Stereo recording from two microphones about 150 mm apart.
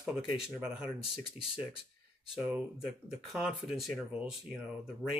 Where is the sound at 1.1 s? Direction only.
35° left (ahead or behind).